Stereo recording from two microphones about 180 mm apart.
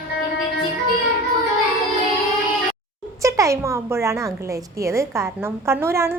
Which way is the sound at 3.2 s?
15° right (ahead or behind).